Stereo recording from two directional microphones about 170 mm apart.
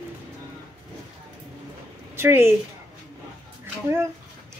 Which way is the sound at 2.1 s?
15° right (ahead or behind).